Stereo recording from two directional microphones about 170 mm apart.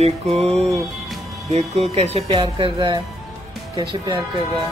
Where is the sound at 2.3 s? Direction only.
25° right (ahead or behind).